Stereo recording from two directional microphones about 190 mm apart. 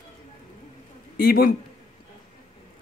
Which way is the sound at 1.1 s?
50° left (ahead or behind).